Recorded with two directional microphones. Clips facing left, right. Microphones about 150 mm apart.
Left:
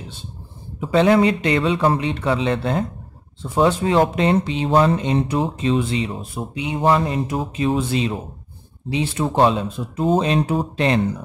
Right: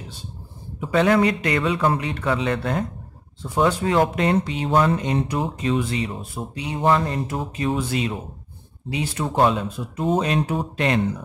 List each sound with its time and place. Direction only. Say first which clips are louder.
0.7 s speech: left 3 dB; 25° left (ahead or behind)